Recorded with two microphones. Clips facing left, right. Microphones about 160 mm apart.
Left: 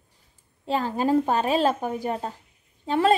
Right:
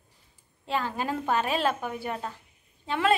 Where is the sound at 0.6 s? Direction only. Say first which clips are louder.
Left 5 dB; 40° left (ahead or behind).